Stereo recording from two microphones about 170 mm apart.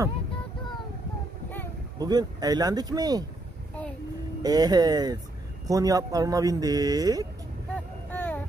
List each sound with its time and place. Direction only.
2.0 s a man's voice: 25° right (ahead or behind)
4.4 s a man's voice: 25° right (ahead or behind)
8.1 s a sound: 10° left (ahead or behind)